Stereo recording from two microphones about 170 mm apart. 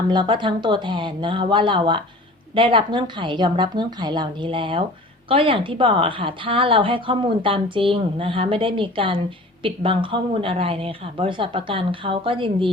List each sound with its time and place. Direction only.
0.1 s a woman's voice: 25° right (ahead or behind)